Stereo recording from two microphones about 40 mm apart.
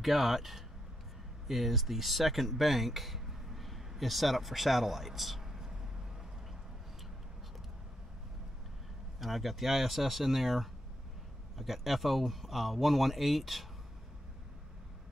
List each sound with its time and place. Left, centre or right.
0.0 s speech: centre
9.2 s speech: centre